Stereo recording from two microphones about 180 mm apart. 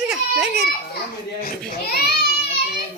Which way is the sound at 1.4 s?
55° left (ahead or behind).